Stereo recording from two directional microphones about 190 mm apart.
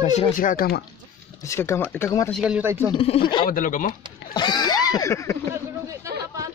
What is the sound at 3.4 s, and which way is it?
Speech, 45° left (ahead or behind).